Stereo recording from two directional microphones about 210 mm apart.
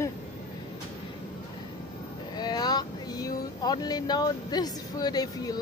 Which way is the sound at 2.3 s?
20° left (ahead or behind).